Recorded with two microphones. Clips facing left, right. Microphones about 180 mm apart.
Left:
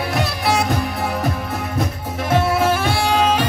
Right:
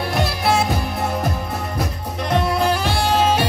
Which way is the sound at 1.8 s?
5° left (ahead or behind).